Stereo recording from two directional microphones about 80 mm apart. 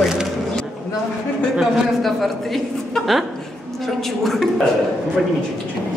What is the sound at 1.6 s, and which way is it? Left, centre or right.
A man's voice, centre.